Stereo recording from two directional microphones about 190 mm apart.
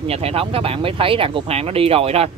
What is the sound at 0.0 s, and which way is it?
Speech, 30° right (ahead or behind).